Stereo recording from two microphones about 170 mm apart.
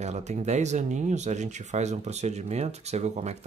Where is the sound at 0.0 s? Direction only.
40° right (ahead or behind).